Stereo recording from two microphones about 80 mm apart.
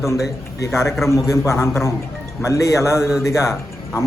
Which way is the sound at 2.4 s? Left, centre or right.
Left.